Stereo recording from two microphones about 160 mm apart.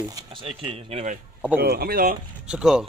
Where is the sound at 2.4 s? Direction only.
5° right (ahead or behind).